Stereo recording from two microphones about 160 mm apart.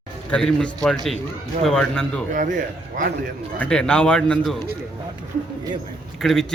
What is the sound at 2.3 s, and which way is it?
Speech, 55° right (ahead or behind).